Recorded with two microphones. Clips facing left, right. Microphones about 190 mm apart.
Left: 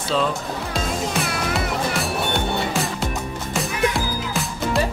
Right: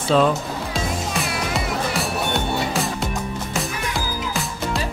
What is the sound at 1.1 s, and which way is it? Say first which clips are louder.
Music: left 1 dB; centre (ahead or behind).